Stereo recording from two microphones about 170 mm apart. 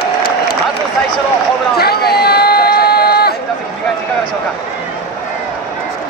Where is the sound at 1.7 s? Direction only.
65° left (ahead or behind).